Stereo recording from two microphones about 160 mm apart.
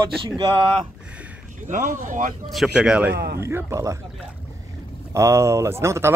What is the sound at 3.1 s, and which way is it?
Speech, 85° right.